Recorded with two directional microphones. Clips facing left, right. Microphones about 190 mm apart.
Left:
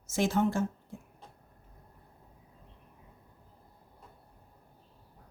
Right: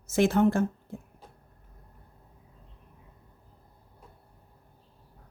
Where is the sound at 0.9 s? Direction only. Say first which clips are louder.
Right 5 dB; 60° right (ahead or behind).